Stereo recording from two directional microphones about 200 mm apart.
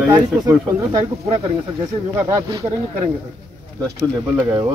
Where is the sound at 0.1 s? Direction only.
20° right (ahead or behind).